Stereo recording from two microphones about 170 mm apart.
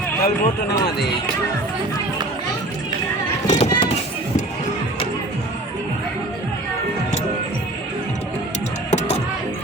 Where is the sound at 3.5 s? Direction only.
40° left (ahead or behind).